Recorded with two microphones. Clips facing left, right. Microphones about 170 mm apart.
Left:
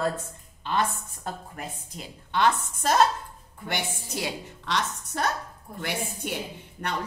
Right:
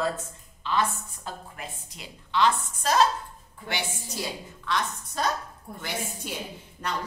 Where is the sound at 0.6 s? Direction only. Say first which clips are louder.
Even; 55° left (ahead or behind).